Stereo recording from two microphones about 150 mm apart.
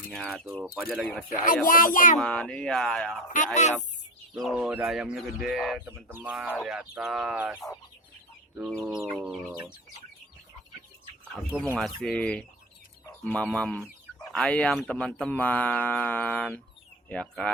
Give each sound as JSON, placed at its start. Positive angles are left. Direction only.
{"t": 0.1, "sound": "speech", "side_deg": 0}
{"t": 1.3, "sound": "speech", "side_deg": 60}
{"t": 2.1, "sound": "speech", "side_deg": 5}
{"t": 3.3, "sound": "speech", "side_deg": 55}
{"t": 4.4, "sound": "speech", "side_deg": 0}
{"t": 5.7, "sound": "speech", "side_deg": -15}
{"t": 8.7, "sound": "speech", "side_deg": 0}
{"t": 11.5, "sound": "speech", "side_deg": -5}